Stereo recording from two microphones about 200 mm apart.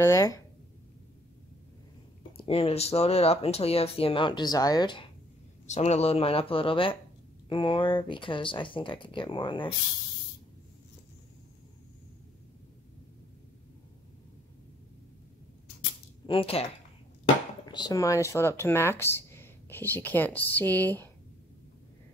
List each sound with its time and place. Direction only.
0.0 s speech: 15° left (ahead or behind)
2.3 s speech: 30° left (ahead or behind)
16.3 s speech: 30° left (ahead or behind)
17.6 s speech: 20° left (ahead or behind)